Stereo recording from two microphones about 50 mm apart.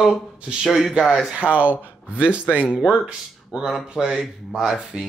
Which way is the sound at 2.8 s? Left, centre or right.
Right.